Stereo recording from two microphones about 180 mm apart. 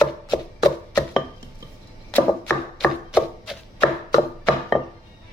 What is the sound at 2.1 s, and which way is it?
Chopping, 10° left (ahead or behind).